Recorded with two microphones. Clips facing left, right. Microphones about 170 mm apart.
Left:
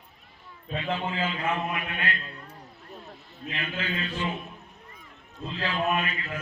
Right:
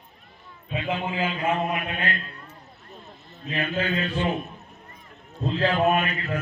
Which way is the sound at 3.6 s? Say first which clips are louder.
Right 8 dB; 45° right (ahead or behind).